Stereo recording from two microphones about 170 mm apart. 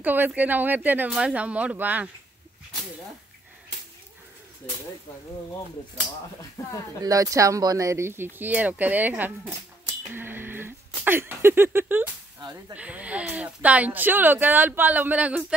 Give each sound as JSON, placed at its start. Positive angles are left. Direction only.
{"t": 0.0, "sound": "speech", "side_deg": -10}
{"t": 6.6, "sound": "speech", "side_deg": 15}
{"t": 7.0, "sound": "speech", "side_deg": -20}
{"t": 10.0, "sound": "a sound", "side_deg": -10}
{"t": 12.7, "sound": "speech", "side_deg": -10}